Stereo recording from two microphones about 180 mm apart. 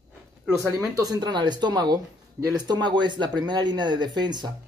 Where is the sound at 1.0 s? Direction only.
20° right (ahead or behind).